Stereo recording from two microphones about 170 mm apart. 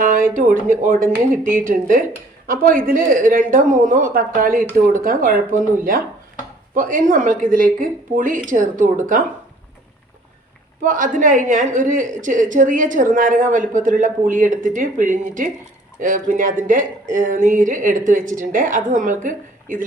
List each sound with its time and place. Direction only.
0.0 s a sound: 55° right (ahead or behind)
0.3 s a woman's voice: 50° right (ahead or behind)
10.8 s a woman's voice: 50° right (ahead or behind)